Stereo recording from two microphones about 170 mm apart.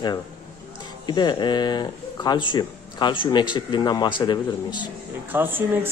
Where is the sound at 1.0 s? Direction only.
25° left (ahead or behind).